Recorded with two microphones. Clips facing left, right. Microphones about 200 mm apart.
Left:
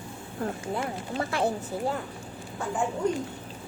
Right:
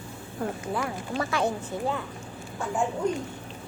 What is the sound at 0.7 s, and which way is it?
Speech, 30° left (ahead or behind).